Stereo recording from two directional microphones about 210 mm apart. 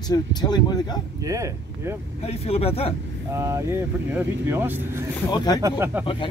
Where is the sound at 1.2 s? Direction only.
15° right (ahead or behind).